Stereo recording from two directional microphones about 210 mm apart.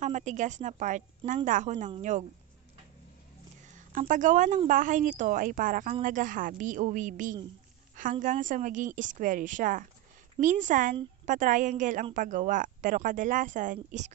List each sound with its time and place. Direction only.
0.0 s a woman's voice: 35° right (ahead or behind)
3.6 s a woman's voice: 35° right (ahead or behind)